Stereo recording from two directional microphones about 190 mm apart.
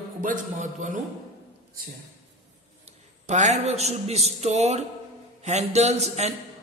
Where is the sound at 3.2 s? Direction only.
35° right (ahead or behind).